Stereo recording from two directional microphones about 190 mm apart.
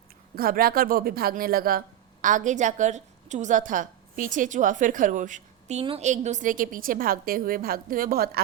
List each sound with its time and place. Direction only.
0.3 s a woman's voice: 50° right (ahead or behind)